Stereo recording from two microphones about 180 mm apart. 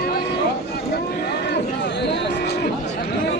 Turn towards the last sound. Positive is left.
turn(degrees=65)  # may be behind; listen again after turning